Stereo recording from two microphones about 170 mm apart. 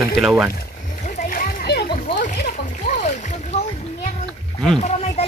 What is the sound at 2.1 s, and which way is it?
Boat, 55° left (ahead or behind).